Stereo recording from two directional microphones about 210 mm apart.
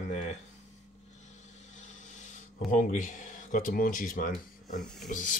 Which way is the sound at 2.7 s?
40° left (ahead or behind).